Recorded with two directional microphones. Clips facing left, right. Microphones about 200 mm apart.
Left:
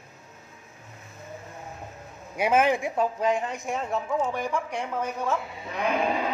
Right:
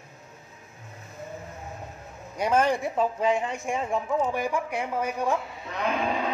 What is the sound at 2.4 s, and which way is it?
Speech, 5° left (ahead or behind).